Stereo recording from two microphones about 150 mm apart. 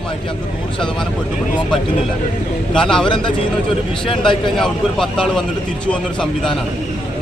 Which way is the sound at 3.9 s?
35° left (ahead or behind).